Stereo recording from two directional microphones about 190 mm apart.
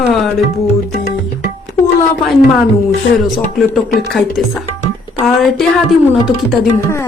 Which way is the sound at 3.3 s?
Centre (ahead or behind).